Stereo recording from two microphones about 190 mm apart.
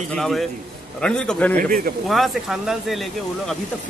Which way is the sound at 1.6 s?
50° right (ahead or behind).